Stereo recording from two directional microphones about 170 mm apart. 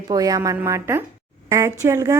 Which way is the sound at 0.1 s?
20° right (ahead or behind).